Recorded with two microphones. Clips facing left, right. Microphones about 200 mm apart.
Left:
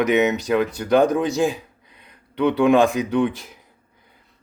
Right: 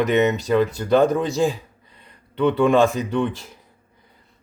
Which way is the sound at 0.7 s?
15° left (ahead or behind).